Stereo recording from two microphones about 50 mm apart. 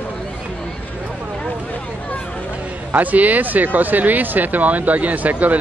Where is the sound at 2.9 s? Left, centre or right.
Right.